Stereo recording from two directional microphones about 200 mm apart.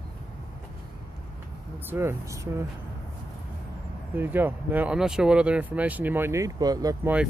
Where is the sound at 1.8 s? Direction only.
10° right (ahead or behind).